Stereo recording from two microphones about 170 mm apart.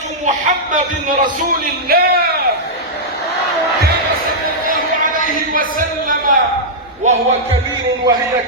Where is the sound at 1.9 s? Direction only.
65° right (ahead or behind).